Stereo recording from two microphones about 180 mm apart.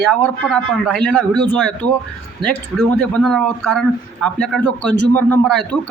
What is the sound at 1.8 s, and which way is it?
A man's voice, 5° left (ahead or behind).